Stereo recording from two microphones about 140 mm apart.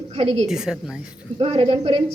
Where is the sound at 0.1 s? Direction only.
50° right (ahead or behind).